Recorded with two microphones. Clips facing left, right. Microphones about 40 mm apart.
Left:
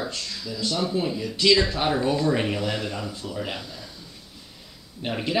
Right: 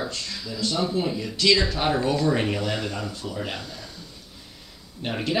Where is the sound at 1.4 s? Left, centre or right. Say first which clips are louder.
Left 1 dB; centre.